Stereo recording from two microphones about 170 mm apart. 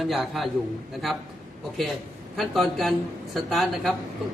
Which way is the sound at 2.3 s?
Centre (ahead or behind).